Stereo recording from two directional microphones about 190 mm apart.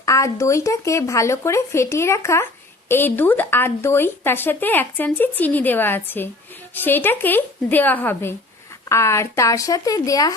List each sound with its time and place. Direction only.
0.0 s speech: 15° left (ahead or behind)